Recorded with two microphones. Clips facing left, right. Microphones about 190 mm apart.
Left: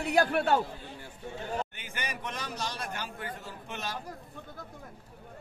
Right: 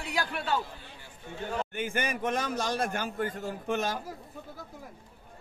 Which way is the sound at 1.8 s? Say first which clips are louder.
Right 8 dB; 50° right (ahead or behind).